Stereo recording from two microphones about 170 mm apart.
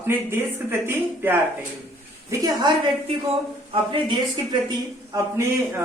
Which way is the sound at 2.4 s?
25° right (ahead or behind).